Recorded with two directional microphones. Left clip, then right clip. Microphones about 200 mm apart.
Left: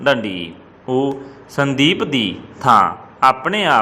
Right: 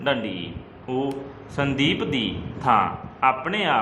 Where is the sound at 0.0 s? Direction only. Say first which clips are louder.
Left 8 dB; 25° left (ahead or behind).